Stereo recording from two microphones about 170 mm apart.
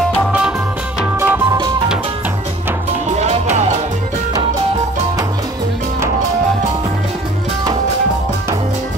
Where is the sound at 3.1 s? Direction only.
40° right (ahead or behind).